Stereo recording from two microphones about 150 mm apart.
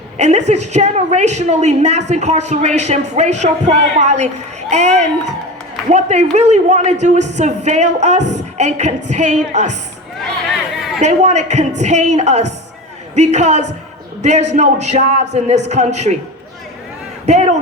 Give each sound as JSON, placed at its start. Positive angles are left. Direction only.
{"t": 0.2, "sound": "a woman's voice", "side_deg": -50}
{"t": 11.0, "sound": "a woman's voice", "side_deg": -50}
{"t": 17.2, "sound": "a woman's voice", "side_deg": -50}